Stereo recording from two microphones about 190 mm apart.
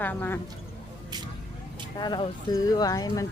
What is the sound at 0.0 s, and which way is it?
Speech, 10° left (ahead or behind).